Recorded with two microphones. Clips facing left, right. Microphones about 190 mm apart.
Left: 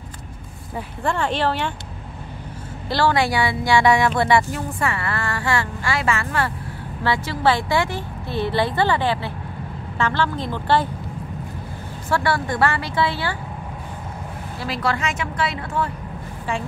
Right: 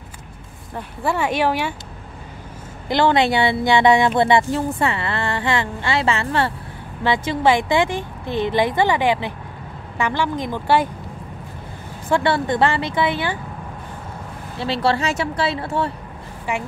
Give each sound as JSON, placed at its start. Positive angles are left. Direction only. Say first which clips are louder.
{"t": 1.0, "sound": "speech", "louder": "right 2 dB", "side_deg": -10}
{"t": 2.9, "sound": "speech", "louder": "right 3 dB", "side_deg": -20}
{"t": 12.1, "sound": "speech", "louder": "right 3 dB", "side_deg": -25}
{"t": 14.6, "sound": "speech", "louder": "right 4 dB", "side_deg": -30}